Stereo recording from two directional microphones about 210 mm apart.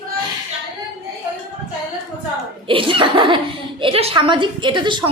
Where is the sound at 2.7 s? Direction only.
25° right (ahead or behind).